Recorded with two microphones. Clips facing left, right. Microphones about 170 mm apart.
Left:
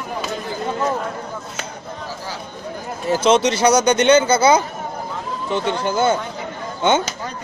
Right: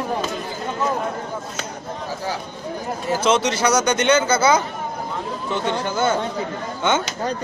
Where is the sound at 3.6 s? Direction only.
30° left (ahead or behind).